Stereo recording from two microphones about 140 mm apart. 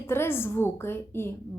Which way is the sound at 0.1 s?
15° left (ahead or behind).